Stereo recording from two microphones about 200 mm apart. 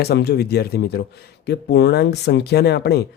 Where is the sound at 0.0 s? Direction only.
55° left (ahead or behind).